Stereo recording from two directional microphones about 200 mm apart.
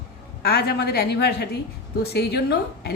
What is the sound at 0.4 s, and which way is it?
A woman's voice, 55° left (ahead or behind).